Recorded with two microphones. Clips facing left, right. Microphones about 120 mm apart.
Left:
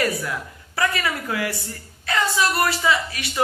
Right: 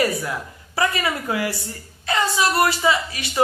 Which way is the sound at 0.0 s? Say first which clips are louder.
Right 2 dB; 20° right (ahead or behind).